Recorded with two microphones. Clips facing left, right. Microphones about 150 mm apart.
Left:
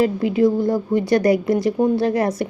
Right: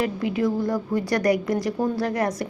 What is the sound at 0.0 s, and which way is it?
A woman's voice, 25° left (ahead or behind).